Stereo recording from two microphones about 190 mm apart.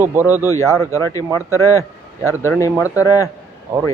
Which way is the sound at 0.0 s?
10° right (ahead or behind).